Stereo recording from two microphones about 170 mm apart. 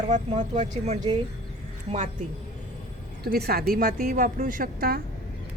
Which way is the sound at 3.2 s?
65° right (ahead or behind).